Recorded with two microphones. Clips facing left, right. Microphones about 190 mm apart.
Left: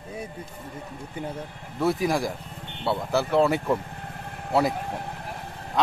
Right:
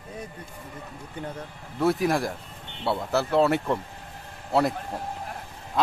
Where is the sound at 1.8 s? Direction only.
Centre (ahead or behind).